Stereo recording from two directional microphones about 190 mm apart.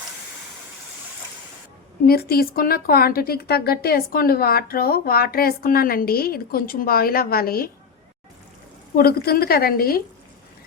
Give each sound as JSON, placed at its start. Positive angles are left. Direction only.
{"t": 2.0, "sound": "speech", "side_deg": 55}
{"t": 9.0, "sound": "speech", "side_deg": 55}